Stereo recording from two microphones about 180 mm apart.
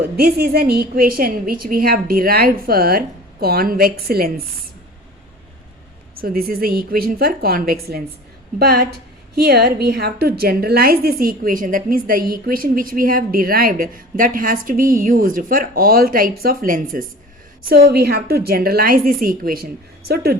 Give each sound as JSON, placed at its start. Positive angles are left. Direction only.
{"t": 0.2, "sound": "a woman's voice", "side_deg": -60}
{"t": 6.2, "sound": "a woman's voice", "side_deg": -55}
{"t": 17.8, "sound": "a woman's voice", "side_deg": -60}